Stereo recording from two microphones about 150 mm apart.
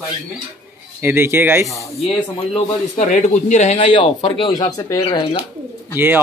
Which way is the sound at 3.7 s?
35° left (ahead or behind).